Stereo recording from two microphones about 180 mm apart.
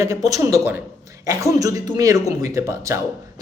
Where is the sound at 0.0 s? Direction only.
20° right (ahead or behind).